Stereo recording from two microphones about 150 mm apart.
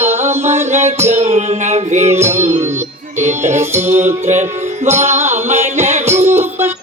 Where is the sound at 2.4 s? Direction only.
50° right (ahead or behind).